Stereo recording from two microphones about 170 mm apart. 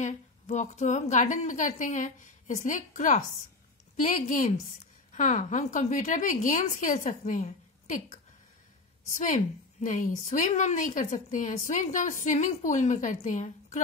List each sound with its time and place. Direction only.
0.0 s a woman's voice: 45° left (ahead or behind)